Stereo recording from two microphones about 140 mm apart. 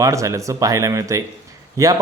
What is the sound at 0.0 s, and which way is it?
A man's voice, 20° right (ahead or behind).